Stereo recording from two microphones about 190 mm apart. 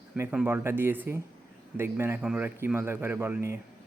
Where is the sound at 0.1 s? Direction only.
5° right (ahead or behind).